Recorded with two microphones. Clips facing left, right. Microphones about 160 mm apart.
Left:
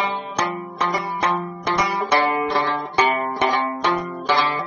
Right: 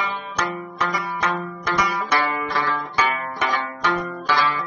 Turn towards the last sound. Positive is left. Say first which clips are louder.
# left 1 dB
turn(degrees=25)  # may be behind; listen again after turning